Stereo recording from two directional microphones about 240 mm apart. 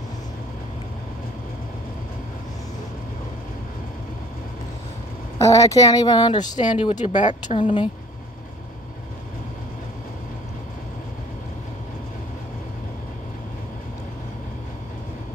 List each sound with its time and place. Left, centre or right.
5.4 s speech: centre
6.5 s speech: left